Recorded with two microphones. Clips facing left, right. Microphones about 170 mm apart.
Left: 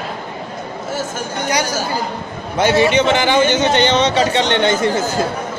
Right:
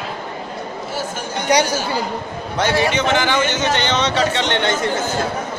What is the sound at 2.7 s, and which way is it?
Speech, 20° left (ahead or behind).